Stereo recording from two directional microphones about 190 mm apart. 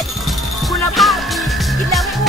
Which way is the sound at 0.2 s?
Centre (ahead or behind).